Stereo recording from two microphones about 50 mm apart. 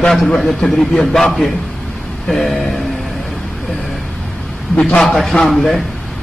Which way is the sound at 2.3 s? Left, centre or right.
Centre.